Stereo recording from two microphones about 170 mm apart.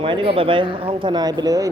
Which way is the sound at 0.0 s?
30° right (ahead or behind).